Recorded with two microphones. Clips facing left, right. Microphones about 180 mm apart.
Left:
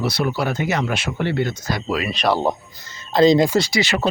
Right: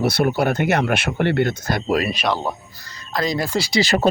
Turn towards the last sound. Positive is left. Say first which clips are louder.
# right 2 dB
turn(degrees=-35)  # may be behind; listen again after turning